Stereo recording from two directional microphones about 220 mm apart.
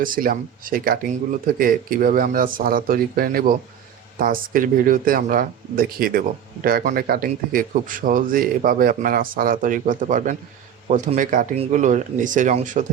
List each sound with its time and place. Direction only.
0.0 s speech: 40° right (ahead or behind)